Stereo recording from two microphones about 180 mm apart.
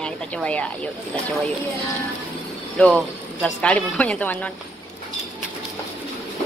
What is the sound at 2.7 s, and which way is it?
A woman's voice, 5° left (ahead or behind).